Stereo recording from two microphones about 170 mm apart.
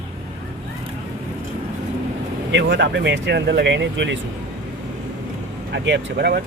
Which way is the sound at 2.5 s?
90° right.